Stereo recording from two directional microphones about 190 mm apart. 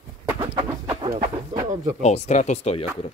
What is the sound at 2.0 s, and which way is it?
Speech, 35° left (ahead or behind).